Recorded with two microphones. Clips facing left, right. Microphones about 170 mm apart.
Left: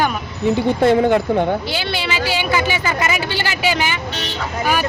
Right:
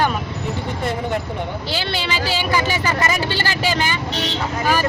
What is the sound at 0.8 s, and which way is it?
Speech, 90° left.